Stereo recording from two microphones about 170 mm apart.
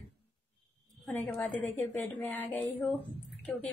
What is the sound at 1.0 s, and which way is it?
A woman's voice, 5° left (ahead or behind).